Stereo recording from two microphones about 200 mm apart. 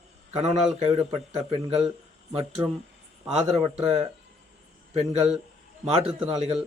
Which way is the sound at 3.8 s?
30° right (ahead or behind).